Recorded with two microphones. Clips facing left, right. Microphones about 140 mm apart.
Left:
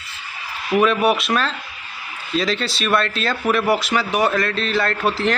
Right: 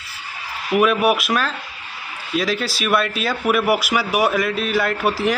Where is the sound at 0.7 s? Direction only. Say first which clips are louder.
Even; 5° right (ahead or behind).